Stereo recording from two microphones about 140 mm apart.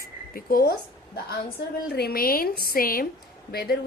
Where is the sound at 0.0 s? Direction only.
90° left.